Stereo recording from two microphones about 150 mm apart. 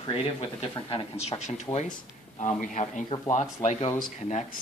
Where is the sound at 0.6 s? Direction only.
45° left (ahead or behind).